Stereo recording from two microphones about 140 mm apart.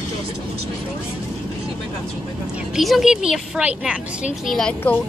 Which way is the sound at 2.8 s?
Centre (ahead or behind).